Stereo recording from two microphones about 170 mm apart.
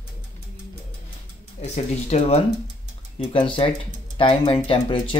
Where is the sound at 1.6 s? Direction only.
40° left (ahead or behind).